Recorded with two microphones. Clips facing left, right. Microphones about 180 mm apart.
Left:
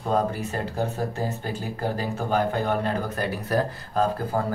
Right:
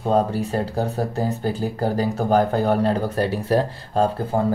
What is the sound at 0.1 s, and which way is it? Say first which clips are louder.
Speech: right 4 dB; 30° right (ahead or behind).